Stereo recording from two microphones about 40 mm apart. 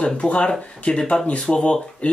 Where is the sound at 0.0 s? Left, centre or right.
Left.